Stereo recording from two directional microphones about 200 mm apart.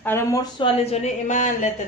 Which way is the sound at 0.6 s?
30° left (ahead or behind).